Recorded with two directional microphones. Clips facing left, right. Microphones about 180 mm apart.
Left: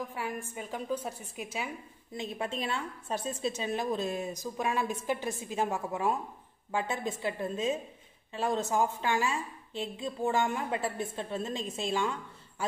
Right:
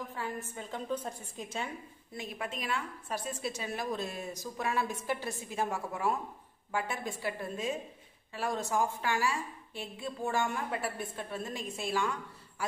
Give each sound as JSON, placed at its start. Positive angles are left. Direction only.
{"t": 0.1, "sound": "a woman's voice", "side_deg": 15}
{"t": 2.1, "sound": "a woman's voice", "side_deg": 25}